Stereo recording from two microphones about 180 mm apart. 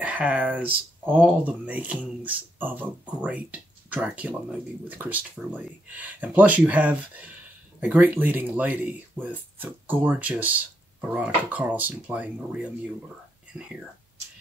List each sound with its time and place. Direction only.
0.0 s speech: 10° right (ahead or behind)
13.5 s speech: 5° right (ahead or behind)